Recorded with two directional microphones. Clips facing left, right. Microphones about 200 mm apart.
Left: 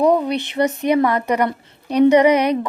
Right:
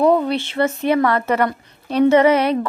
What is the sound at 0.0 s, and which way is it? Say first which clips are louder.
A woman's voice: right 1 dB; 15° left (ahead or behind).